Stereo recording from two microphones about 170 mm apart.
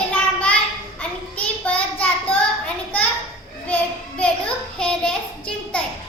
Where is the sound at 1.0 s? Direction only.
10° left (ahead or behind).